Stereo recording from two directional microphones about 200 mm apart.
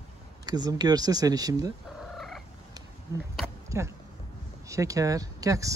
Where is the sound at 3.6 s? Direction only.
15° right (ahead or behind).